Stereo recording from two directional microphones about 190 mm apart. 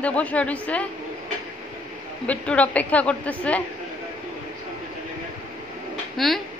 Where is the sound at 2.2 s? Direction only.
5° left (ahead or behind).